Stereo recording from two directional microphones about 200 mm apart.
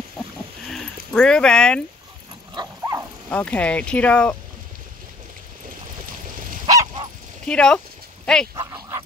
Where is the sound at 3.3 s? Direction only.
5° left (ahead or behind).